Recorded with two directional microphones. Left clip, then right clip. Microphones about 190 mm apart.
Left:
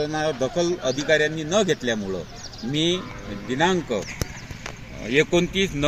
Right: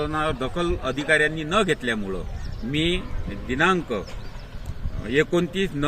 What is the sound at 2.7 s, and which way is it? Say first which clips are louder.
Speech: left 1 dB; 35° left (ahead or behind).